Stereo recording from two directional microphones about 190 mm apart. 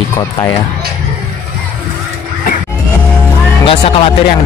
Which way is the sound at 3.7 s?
30° left (ahead or behind).